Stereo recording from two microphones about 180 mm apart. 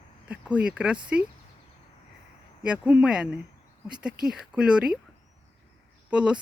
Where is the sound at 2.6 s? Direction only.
5° right (ahead or behind).